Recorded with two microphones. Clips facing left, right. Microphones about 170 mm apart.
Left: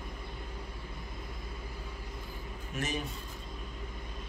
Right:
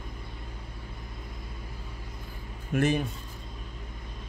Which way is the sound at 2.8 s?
60° right (ahead or behind).